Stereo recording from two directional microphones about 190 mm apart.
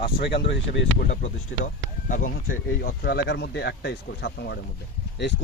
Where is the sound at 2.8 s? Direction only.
55° left (ahead or behind).